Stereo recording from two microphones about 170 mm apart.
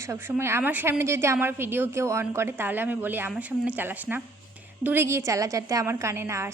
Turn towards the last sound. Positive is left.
turn(degrees=-15)  # may be behind; listen again after turning